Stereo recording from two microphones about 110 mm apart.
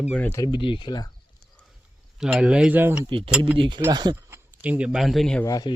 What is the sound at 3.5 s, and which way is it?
Speech, 50° right (ahead or behind).